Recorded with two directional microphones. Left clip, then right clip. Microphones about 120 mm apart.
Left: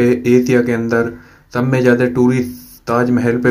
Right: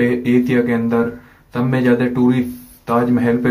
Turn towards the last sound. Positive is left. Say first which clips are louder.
# left 2 dB
turn(degrees=30)  # may be behind; listen again after turning